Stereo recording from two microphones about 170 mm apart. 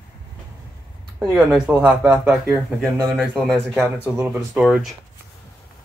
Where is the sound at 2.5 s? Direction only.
20° right (ahead or behind).